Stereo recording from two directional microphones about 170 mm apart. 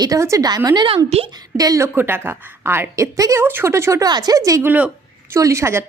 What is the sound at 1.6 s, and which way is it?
A woman's voice, 20° right (ahead or behind).